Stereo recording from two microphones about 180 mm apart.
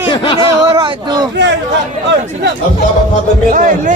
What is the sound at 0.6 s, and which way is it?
Speech, 20° right (ahead or behind).